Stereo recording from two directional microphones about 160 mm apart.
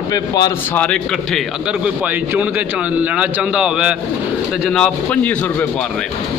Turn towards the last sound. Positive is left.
turn(degrees=5)  # may be behind; listen again after turning